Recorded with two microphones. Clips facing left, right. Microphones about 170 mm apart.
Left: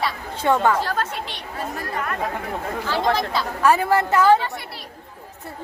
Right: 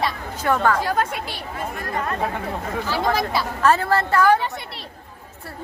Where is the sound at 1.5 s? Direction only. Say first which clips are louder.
Left 1 dB; 40° left (ahead or behind).